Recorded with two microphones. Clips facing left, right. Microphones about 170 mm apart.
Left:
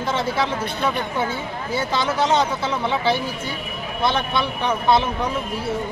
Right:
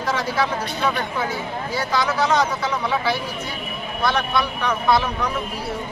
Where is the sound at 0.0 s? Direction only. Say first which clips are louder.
Even; 25° left (ahead or behind).